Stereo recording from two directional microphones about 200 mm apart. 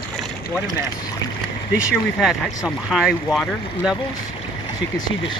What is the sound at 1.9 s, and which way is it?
Speech, centre (ahead or behind).